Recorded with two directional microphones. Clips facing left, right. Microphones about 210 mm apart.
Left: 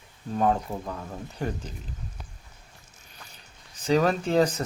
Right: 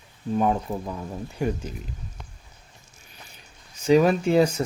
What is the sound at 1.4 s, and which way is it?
Speech, 10° right (ahead or behind).